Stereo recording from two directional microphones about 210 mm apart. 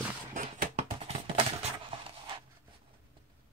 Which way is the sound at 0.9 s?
25° right (ahead or behind).